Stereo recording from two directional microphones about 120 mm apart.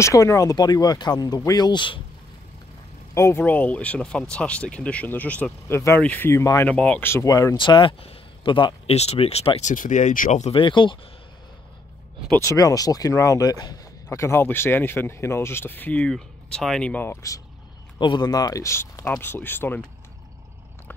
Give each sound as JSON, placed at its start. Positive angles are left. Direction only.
{"t": 0.0, "sound": "speech", "side_deg": 25}
{"t": 3.2, "sound": "speech", "side_deg": 20}
{"t": 6.7, "sound": "speech", "side_deg": 10}
{"t": 7.2, "sound": "speech", "side_deg": 30}
{"t": 7.5, "sound": "speech", "side_deg": 40}
{"t": 8.9, "sound": "speech", "side_deg": 60}
{"t": 10.5, "sound": "speech", "side_deg": 45}
{"t": 12.4, "sound": "speech", "side_deg": 25}
{"t": 17.9, "sound": "speech", "side_deg": 40}